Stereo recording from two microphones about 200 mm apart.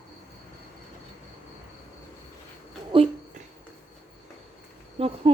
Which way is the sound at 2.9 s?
25° right (ahead or behind).